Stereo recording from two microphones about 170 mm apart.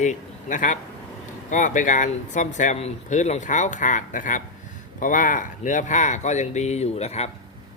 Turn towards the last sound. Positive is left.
turn(degrees=40)  # may be behind; listen again after turning